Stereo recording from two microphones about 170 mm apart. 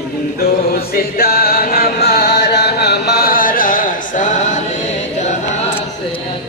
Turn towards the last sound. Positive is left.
turn(degrees=45)  # may be behind; listen again after turning